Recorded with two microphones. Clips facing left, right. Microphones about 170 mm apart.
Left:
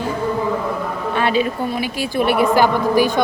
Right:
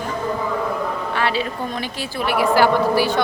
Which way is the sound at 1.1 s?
20° left (ahead or behind).